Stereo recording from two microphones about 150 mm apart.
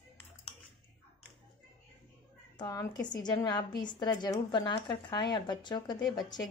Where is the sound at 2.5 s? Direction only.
25° left (ahead or behind).